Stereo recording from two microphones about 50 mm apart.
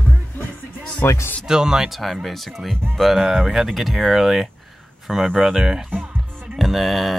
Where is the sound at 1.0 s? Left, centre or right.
Left.